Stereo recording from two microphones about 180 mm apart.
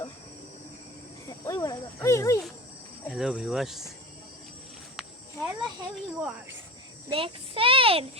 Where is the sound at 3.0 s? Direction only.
Centre (ahead or behind).